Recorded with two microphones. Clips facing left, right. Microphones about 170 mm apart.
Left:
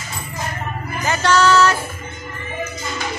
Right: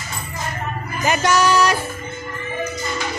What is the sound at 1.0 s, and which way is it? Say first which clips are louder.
Music: left 1 dB; 15° right (ahead or behind).